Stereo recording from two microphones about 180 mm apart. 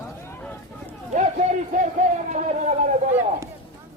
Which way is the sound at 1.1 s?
40° right (ahead or behind).